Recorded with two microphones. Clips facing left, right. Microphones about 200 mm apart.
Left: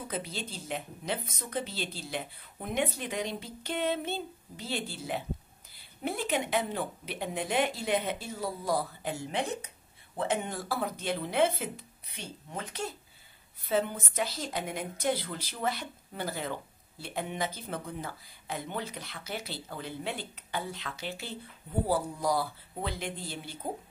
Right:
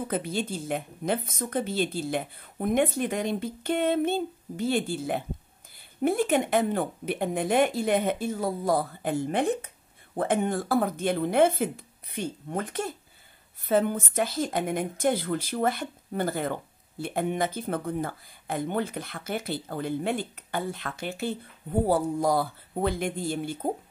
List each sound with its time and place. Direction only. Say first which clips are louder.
0.1 s speech: right 7 dB; 50° right (ahead or behind)